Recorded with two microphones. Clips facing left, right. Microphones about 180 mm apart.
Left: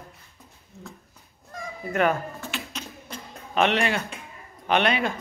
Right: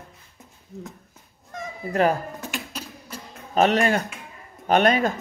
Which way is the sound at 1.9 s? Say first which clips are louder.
Right 2 dB; 35° right (ahead or behind).